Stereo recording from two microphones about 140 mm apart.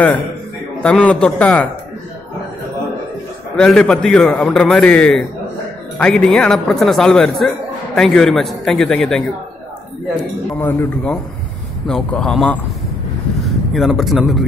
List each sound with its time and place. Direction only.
0.8 s a man's voice: 5° left (ahead or behind)
3.5 s speech: 5° left (ahead or behind)
10.6 s a man's voice: 15° left (ahead or behind)